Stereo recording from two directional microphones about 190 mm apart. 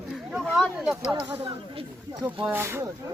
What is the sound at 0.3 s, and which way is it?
Speech, centre (ahead or behind).